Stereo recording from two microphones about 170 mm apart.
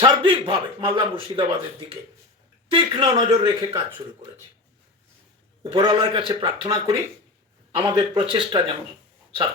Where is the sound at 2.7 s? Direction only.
30° right (ahead or behind).